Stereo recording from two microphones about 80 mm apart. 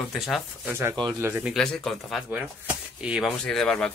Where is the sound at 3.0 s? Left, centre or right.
Centre.